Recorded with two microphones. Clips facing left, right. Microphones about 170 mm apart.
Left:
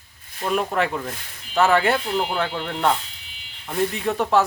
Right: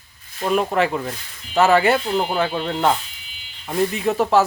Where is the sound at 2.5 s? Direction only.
15° right (ahead or behind).